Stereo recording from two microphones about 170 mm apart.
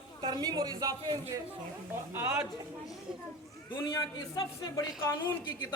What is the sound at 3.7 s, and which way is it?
Speech, 15° left (ahead or behind).